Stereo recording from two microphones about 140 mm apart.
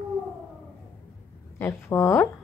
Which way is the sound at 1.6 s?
20° left (ahead or behind).